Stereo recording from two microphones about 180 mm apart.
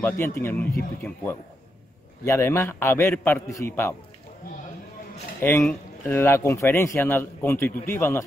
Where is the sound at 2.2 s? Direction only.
15° left (ahead or behind).